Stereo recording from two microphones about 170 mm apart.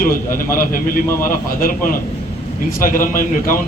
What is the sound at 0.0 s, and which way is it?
A man's voice, 55° left (ahead or behind).